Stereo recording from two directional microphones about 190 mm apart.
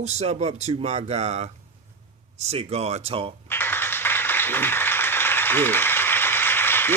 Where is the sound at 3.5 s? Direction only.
10° left (ahead or behind).